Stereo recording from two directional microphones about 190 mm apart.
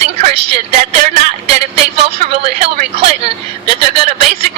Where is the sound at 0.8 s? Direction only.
45° right (ahead or behind).